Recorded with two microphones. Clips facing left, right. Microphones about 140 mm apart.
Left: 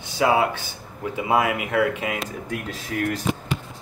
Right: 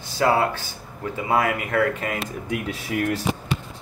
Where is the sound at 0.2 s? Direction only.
15° left (ahead or behind).